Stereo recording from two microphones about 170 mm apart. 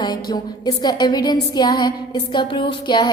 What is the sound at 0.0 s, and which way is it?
A woman's voice, 25° left (ahead or behind).